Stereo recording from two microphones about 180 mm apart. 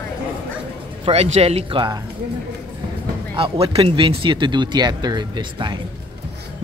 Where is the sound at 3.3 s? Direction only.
30° right (ahead or behind).